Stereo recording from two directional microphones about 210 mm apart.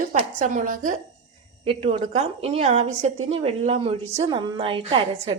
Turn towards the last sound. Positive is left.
turn(degrees=-25)  # may be behind; listen again after turning